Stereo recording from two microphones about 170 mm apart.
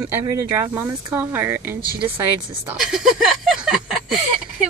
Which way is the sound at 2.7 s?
Centre (ahead or behind).